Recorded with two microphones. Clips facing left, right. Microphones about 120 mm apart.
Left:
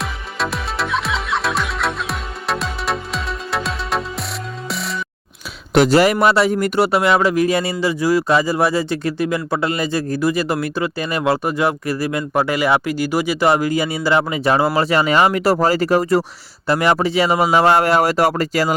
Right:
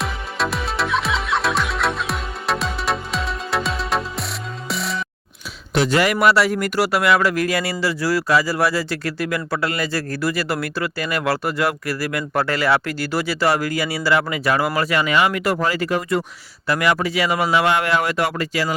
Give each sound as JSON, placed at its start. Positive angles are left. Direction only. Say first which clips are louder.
{"t": 0.0, "sound": "music", "louder": "even", "side_deg": 0}
{"t": 5.9, "sound": "speech", "louder": "even", "side_deg": 30}